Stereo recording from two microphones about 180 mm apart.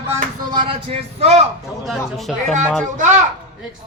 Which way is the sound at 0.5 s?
30° right (ahead or behind).